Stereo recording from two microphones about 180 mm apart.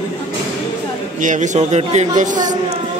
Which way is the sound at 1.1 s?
45° right (ahead or behind).